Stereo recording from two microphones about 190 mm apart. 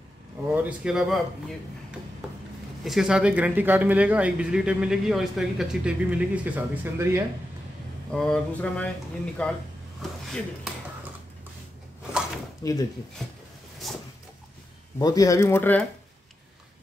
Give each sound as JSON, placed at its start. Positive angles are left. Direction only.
{"t": 0.6, "sound": "speech", "side_deg": -5}
{"t": 2.8, "sound": "speech", "side_deg": 0}
{"t": 8.1, "sound": "speech", "side_deg": 5}
{"t": 12.6, "sound": "speech", "side_deg": 15}
{"t": 13.8, "sound": "a sound", "side_deg": 0}
{"t": 15.0, "sound": "speech", "side_deg": 20}